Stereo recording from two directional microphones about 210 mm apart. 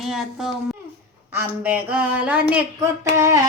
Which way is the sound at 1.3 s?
10° right (ahead or behind).